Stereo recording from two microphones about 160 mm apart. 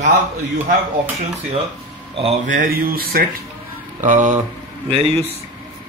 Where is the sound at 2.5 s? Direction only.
65° right (ahead or behind).